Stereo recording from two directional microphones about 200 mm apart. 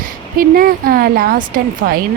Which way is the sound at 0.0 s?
45° right (ahead or behind).